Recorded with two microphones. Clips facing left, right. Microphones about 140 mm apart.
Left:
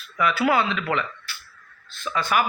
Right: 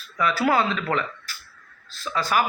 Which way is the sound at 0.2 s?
35° right (ahead or behind).